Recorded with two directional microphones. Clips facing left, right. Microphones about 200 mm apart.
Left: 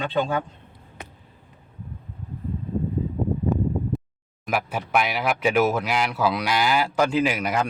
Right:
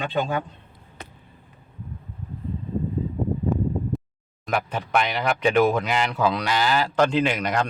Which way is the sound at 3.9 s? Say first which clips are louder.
Left 1 dB; centre (ahead or behind).